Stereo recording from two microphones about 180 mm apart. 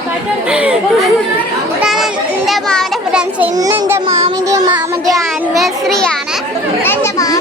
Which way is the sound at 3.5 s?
20° right (ahead or behind).